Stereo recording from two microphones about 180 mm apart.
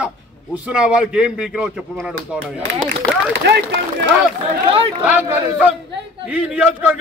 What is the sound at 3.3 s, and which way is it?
Speech, 70° right (ahead or behind).